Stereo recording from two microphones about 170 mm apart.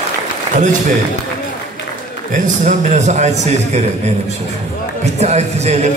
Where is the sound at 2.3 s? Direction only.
45° right (ahead or behind).